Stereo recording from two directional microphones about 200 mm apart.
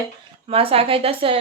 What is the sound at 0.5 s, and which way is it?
Speech, 30° right (ahead or behind).